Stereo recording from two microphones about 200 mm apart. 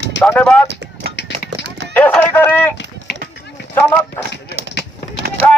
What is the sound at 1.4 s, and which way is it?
Horse, 60° right (ahead or behind).